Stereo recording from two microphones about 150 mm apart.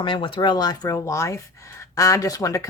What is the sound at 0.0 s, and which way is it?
Speech, 35° left (ahead or behind).